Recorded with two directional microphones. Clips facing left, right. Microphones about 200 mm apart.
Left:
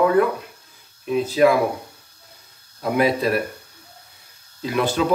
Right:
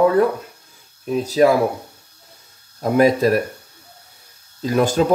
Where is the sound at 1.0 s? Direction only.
40° right (ahead or behind).